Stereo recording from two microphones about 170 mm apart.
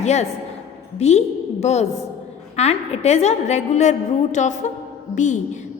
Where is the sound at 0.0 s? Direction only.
40° left (ahead or behind).